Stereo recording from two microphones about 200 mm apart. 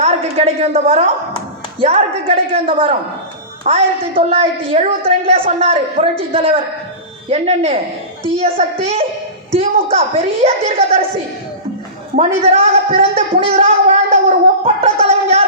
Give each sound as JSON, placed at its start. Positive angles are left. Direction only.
{"t": 0.0, "sound": "a woman's voice", "side_deg": -30}
{"t": 12.1, "sound": "speech", "side_deg": -35}
{"t": 13.4, "sound": "gargling", "side_deg": -30}